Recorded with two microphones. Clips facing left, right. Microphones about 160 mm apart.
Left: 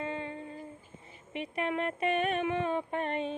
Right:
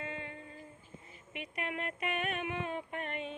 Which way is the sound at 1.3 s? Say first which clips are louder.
Left 7 dB; 30° left (ahead or behind).